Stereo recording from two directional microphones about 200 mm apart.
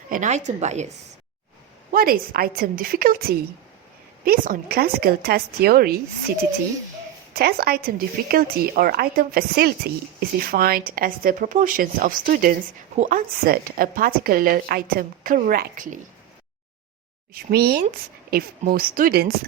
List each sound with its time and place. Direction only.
0.1 s a woman's voice: 35° right (ahead or behind)
1.9 s speech: 50° right (ahead or behind)
7.3 s speech: 50° right (ahead or behind)
17.3 s speech: 50° right (ahead or behind)